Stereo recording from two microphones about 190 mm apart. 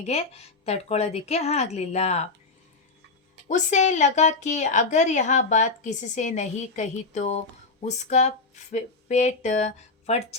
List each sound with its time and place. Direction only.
0.0 s a woman's voice: 35° left (ahead or behind)
3.5 s a woman's voice: 40° left (ahead or behind)